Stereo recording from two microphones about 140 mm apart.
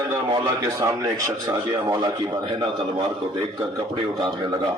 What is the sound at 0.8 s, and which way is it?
A man's voice, 25° right (ahead or behind).